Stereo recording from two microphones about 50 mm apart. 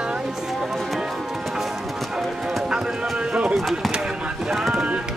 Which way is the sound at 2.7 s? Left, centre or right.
Right.